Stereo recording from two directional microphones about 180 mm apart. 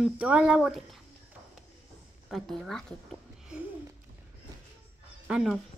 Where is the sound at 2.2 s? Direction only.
Centre (ahead or behind).